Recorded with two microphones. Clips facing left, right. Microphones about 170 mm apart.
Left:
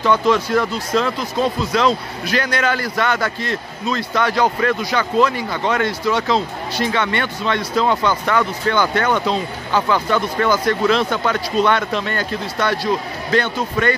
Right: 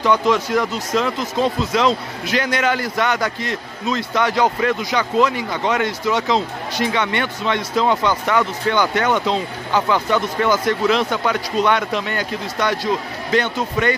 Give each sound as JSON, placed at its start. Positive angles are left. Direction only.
{"t": 0.0, "sound": "speech", "side_deg": -15}